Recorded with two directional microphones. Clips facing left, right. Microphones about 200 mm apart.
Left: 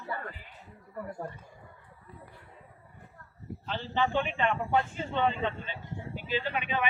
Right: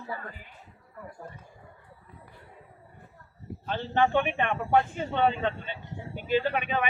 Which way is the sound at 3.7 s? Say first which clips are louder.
Right 5 dB; 55° right (ahead or behind).